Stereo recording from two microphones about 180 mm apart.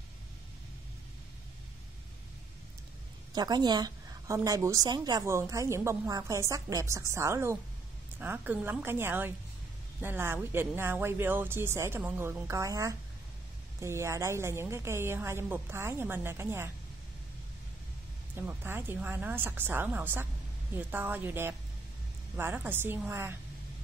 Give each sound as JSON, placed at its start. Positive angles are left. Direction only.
{"t": 3.3, "sound": "a woman's voice", "side_deg": -25}
{"t": 18.3, "sound": "a woman's voice", "side_deg": -10}